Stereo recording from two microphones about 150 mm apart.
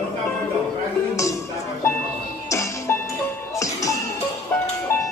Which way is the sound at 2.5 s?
20° left (ahead or behind).